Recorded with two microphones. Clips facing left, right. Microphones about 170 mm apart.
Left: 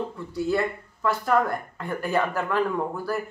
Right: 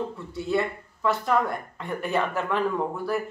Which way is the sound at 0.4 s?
Centre (ahead or behind).